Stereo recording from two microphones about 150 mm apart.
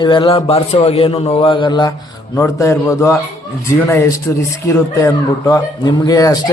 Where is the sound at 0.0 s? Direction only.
35° left (ahead or behind).